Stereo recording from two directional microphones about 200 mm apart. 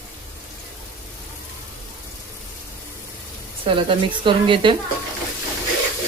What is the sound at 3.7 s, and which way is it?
Speech, 25° right (ahead or behind).